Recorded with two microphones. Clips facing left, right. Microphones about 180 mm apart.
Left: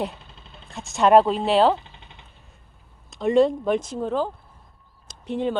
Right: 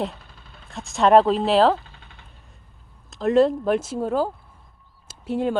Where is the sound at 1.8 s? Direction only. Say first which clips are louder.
Left 1 dB; 20° left (ahead or behind).